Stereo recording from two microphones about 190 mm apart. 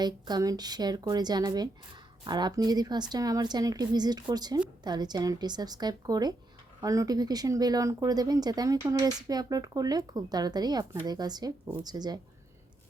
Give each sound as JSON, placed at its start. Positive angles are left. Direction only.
{"t": 0.0, "sound": "speech", "side_deg": -20}